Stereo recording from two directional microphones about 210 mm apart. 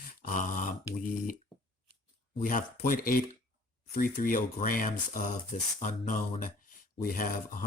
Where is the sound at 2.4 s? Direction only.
40° left (ahead or behind).